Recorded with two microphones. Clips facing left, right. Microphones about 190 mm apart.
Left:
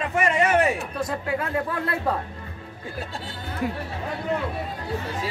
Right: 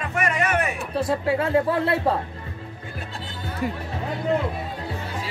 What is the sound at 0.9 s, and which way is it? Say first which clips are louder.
Speech: right 5 dB; 30° right (ahead or behind).